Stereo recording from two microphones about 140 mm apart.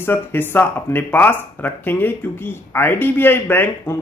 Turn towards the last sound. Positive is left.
turn(degrees=15)  # may be behind; listen again after turning